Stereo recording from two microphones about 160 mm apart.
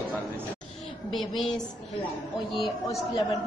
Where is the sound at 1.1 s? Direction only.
Centre (ahead or behind).